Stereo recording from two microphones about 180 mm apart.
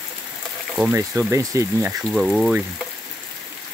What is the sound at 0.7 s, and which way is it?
Speech, 5° right (ahead or behind).